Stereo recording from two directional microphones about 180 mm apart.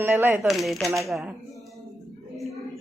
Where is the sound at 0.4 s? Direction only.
Centre (ahead or behind).